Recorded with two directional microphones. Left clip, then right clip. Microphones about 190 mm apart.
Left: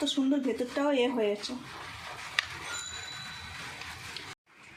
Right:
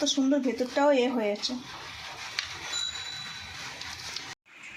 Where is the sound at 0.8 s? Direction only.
15° right (ahead or behind).